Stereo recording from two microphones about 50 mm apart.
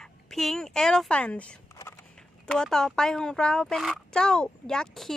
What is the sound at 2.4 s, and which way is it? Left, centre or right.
Speech, centre.